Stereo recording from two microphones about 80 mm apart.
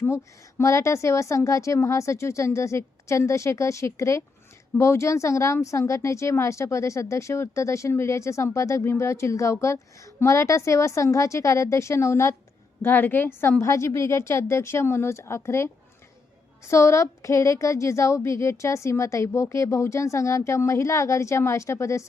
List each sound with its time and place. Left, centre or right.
0.6 s speech: left
12.8 s a woman's voice: left
13.7 s speech: left